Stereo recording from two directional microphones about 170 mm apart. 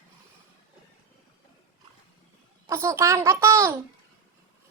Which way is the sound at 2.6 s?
15° right (ahead or behind).